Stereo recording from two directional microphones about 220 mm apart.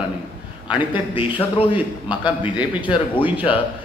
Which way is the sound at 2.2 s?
5° right (ahead or behind).